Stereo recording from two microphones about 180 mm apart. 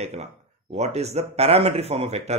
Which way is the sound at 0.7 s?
35° right (ahead or behind).